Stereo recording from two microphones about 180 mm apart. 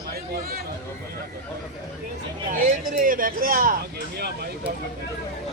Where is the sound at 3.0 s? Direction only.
50° right (ahead or behind).